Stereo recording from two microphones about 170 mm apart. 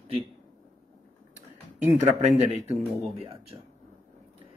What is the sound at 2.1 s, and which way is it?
Speech, 40° right (ahead or behind).